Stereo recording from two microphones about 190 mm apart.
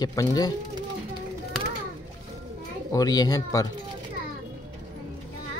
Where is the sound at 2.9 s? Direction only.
20° left (ahead or behind).